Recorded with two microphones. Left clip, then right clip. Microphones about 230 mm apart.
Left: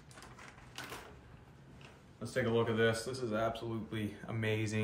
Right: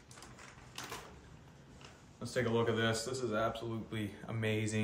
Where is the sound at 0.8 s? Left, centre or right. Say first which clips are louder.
Even; centre.